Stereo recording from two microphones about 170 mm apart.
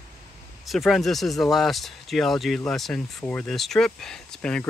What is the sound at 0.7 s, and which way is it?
Speech, centre (ahead or behind).